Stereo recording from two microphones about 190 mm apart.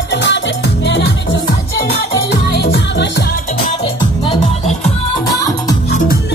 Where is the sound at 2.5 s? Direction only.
60° left (ahead or behind).